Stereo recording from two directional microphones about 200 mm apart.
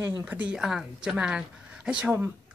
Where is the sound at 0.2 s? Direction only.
10° right (ahead or behind).